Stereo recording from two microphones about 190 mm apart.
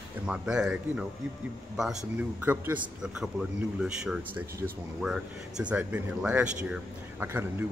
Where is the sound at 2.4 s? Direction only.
10° right (ahead or behind).